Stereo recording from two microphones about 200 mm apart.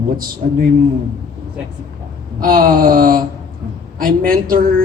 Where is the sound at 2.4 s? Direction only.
45° right (ahead or behind).